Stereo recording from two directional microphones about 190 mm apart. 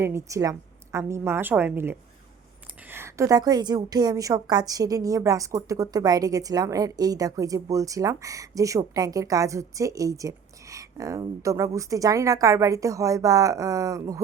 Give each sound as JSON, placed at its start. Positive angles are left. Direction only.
{"t": 0.0, "sound": "a woman's voice", "side_deg": -15}